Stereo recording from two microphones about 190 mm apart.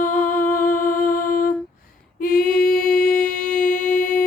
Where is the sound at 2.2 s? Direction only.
50° left (ahead or behind).